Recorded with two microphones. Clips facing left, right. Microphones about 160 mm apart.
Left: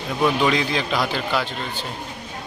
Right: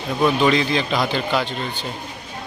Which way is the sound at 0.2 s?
5° right (ahead or behind).